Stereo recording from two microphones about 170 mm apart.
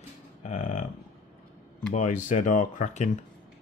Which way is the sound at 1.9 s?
45° left (ahead or behind).